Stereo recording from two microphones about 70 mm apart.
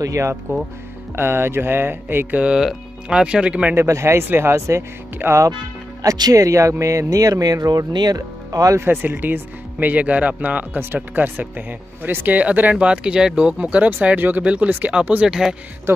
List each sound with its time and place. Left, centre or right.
0.0 s speech: right
1.1 s mantra: right
2.4 s speech: centre
3.7 s mantra: right
6.0 s speech: right
6.3 s speech: right
8.7 s speech: right; by 15.5 s centre